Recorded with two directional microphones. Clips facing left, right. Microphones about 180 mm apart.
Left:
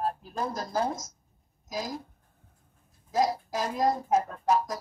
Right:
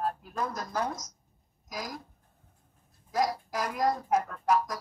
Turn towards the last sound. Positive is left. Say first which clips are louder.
# left 1 dB
turn(degrees=25)  # may be behind; listen again after turning